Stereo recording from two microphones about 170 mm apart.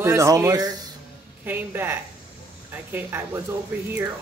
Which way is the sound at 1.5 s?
15° right (ahead or behind).